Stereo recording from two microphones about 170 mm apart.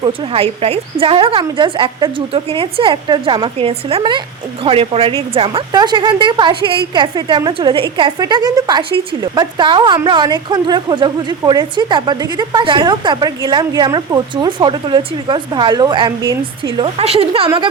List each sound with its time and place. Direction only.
0.0 s a woman's voice: 30° right (ahead or behind)